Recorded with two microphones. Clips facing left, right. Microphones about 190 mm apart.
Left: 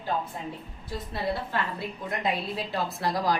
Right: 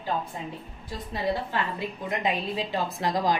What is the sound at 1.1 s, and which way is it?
A woman's voice, 15° right (ahead or behind).